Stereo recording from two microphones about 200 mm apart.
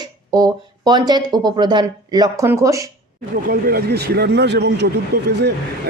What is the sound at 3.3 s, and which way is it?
Speech, 50° right (ahead or behind).